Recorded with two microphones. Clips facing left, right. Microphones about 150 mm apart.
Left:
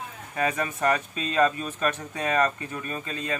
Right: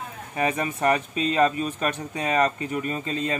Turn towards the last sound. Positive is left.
turn(degrees=-25)  # may be behind; listen again after turning